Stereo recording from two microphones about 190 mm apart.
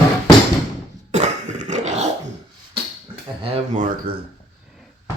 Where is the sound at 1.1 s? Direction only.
40° right (ahead or behind).